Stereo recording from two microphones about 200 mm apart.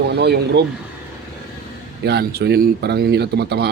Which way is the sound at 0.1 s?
55° right (ahead or behind).